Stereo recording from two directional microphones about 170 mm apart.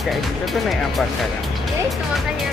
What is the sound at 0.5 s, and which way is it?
Speech, centre (ahead or behind).